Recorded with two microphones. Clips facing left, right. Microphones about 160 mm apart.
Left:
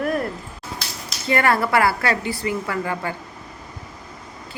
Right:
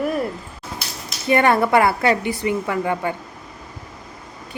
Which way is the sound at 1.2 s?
20° right (ahead or behind).